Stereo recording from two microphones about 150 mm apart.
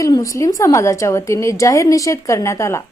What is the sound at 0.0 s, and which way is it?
A woman's voice, 20° left (ahead or behind).